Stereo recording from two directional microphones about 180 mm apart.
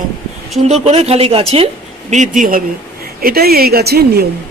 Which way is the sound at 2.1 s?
45° right (ahead or behind).